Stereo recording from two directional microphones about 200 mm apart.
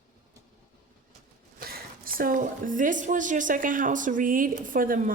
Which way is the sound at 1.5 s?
45° right (ahead or behind).